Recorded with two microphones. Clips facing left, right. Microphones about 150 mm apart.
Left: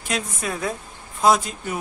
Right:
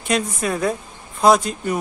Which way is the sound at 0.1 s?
Centre (ahead or behind).